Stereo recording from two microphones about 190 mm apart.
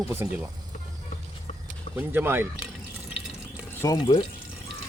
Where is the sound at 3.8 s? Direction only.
20° left (ahead or behind).